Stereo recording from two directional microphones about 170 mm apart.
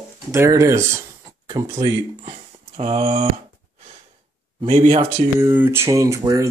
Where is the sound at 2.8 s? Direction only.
40° right (ahead or behind).